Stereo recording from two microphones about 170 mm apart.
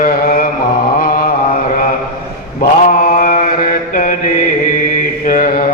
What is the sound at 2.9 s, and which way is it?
Mantra, 50° left (ahead or behind).